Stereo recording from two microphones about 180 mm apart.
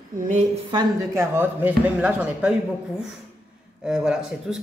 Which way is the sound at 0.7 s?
15° right (ahead or behind).